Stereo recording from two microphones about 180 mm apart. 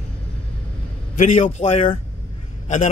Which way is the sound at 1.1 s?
40° left (ahead or behind).